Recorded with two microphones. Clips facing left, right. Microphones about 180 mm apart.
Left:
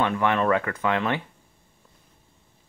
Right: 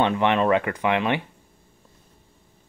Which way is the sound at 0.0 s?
20° right (ahead or behind).